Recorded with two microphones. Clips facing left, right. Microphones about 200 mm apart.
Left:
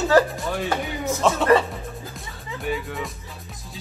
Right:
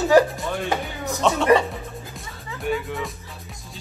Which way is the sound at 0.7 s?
15° right (ahead or behind).